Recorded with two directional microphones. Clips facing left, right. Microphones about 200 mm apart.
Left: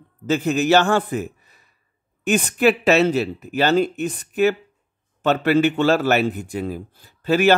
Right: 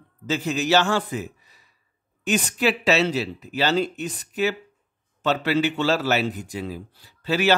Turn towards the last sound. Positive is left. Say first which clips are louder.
# left 5 dB
turn(degrees=50)  # may be behind; listen again after turning